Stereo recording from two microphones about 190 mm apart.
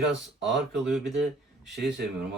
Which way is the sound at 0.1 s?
70° right (ahead or behind).